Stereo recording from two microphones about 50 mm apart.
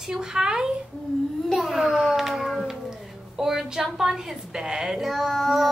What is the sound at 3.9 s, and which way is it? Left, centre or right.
Speech, centre.